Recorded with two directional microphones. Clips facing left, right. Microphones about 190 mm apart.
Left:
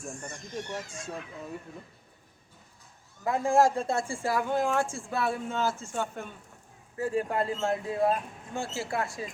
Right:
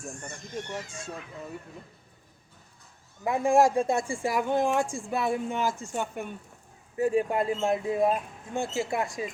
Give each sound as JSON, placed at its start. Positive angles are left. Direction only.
{"t": 0.0, "sound": "speech", "side_deg": 0}
{"t": 3.2, "sound": "speech", "side_deg": -15}